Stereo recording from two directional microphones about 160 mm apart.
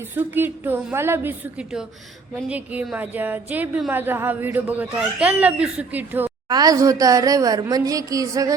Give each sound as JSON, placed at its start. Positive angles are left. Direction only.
{"t": 0.2, "sound": "a woman's voice", "side_deg": -10}
{"t": 6.5, "sound": "a woman's voice", "side_deg": -20}